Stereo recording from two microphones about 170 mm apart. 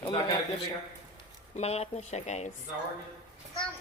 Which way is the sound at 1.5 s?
40° left (ahead or behind).